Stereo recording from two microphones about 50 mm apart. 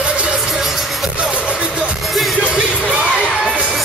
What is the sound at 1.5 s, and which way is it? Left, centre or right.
Music, centre.